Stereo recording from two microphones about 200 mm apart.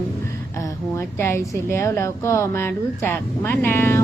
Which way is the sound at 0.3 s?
15° left (ahead or behind).